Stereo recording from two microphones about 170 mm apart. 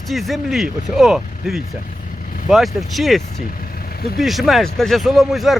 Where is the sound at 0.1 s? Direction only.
Centre (ahead or behind).